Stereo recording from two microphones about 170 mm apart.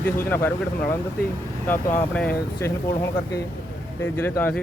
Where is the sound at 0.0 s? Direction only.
15° left (ahead or behind).